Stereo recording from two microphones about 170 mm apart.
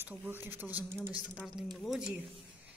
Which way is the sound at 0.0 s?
10° right (ahead or behind).